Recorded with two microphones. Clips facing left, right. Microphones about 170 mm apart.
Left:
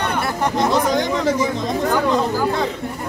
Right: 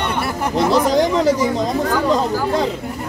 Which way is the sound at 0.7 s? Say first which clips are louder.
Right 3 dB; 35° right (ahead or behind).